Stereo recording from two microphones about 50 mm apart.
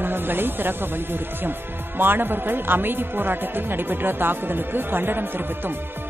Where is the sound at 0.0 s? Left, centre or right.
Right.